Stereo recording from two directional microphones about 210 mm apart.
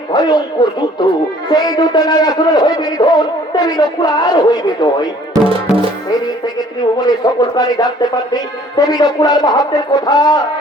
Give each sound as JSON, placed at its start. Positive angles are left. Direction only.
{"t": 0.1, "sound": "a man's voice", "side_deg": 20}
{"t": 5.3, "sound": "music", "side_deg": -25}
{"t": 7.0, "sound": "a man's voice", "side_deg": 20}